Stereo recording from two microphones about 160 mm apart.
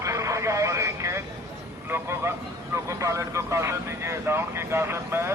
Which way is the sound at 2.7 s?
20° right (ahead or behind).